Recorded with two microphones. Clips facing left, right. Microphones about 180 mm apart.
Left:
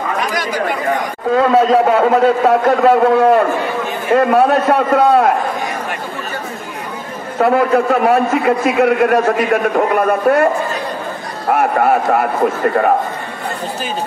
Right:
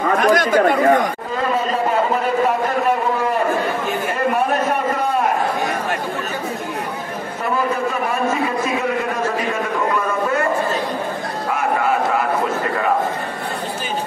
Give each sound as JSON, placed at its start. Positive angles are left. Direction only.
{"t": 0.2, "sound": "speech", "side_deg": -50}
{"t": 1.3, "sound": "a man's voice", "side_deg": 90}
{"t": 7.3, "sound": "a man's voice", "side_deg": 70}